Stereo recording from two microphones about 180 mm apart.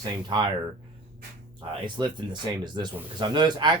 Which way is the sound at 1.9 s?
25° right (ahead or behind).